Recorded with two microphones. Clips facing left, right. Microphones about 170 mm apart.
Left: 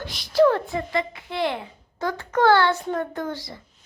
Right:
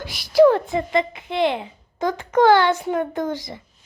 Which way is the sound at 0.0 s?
10° right (ahead or behind).